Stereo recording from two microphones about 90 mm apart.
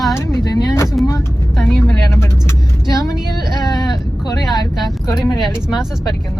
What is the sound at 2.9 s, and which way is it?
Speech, 45° left (ahead or behind).